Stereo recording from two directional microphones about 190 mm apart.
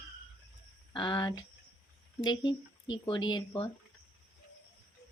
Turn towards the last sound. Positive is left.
turn(degrees=25)  # may be behind; listen again after turning